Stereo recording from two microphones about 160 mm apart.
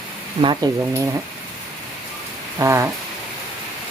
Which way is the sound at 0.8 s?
15° right (ahead or behind).